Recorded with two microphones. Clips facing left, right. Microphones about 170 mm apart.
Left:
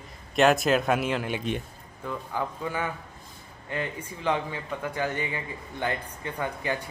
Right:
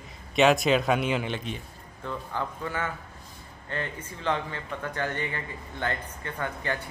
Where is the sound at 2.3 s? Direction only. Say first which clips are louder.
Left 2 dB; 15° left (ahead or behind).